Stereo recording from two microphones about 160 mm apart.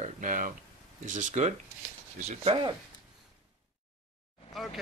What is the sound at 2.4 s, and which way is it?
Speech, 25° right (ahead or behind).